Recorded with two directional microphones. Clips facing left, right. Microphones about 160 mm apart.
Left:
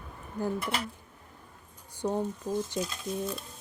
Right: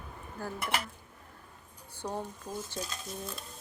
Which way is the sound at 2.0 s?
15° left (ahead or behind).